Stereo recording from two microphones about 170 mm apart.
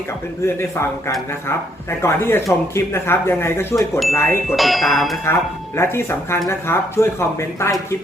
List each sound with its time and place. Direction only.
0.4 s speech: 15° left (ahead or behind)
4.5 s speech: centre (ahead or behind)
5.2 s speech: 15° left (ahead or behind)